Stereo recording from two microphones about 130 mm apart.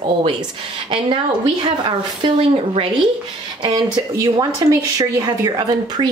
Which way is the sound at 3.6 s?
30° right (ahead or behind).